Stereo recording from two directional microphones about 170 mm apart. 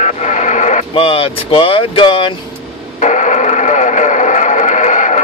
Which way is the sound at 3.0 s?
45° left (ahead or behind).